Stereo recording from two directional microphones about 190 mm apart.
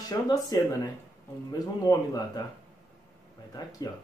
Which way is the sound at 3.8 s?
20° left (ahead or behind).